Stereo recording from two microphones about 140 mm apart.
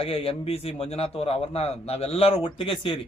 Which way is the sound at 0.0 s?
45° left (ahead or behind).